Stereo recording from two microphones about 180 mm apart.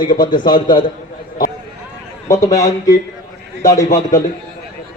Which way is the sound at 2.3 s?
20° left (ahead or behind).